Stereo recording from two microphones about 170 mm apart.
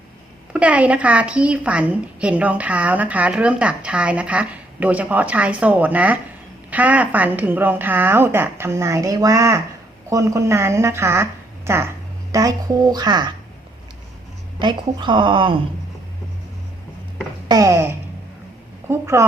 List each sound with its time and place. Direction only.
0.5 s a woman's voice: 10° right (ahead or behind); by 13.3 s 25° right (ahead or behind)
14.6 s a woman's voice: 25° right (ahead or behind)
17.5 s a woman's voice: 20° right (ahead or behind)